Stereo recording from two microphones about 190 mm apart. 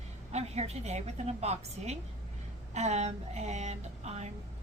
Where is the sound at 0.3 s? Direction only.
35° right (ahead or behind).